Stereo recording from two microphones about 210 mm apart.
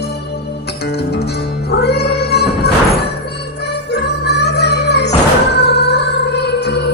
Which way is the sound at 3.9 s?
55° left (ahead or behind).